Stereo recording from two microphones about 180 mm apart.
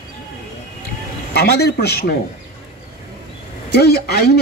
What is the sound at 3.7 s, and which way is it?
Speech, 65° left (ahead or behind).